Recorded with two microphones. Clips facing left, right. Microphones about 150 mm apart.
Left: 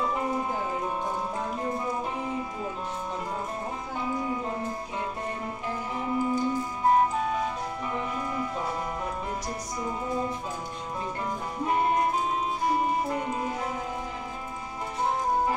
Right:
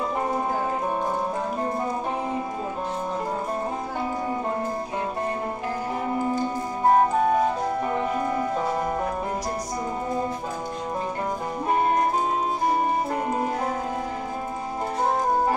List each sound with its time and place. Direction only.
6.0 s music: 45° right (ahead or behind)
13.1 s music: 45° right (ahead or behind)